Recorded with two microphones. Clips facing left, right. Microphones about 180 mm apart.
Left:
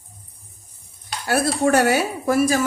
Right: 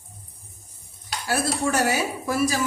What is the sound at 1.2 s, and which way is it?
A woman's voice, 55° left (ahead or behind).